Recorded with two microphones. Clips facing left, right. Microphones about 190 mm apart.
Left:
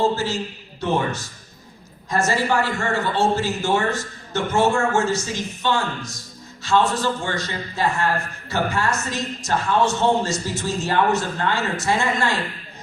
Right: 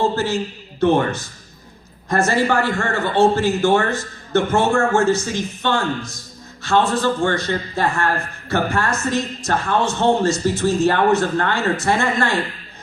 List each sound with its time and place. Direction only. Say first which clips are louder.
0.8 s a woman's voice: right 6 dB; 60° right (ahead or behind)